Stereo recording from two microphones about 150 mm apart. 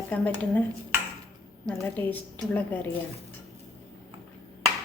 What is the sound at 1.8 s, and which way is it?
Speech, 10° left (ahead or behind).